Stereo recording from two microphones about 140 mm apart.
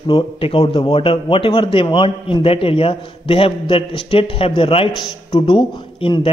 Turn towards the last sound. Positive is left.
turn(degrees=35)  # may be behind; listen again after turning